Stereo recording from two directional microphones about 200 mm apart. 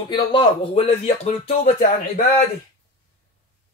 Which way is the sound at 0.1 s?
25° left (ahead or behind).